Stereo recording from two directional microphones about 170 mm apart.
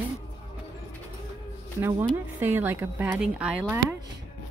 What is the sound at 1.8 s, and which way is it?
Speech, 15° right (ahead or behind).